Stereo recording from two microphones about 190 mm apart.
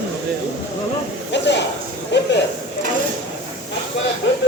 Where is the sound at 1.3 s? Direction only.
65° left (ahead or behind).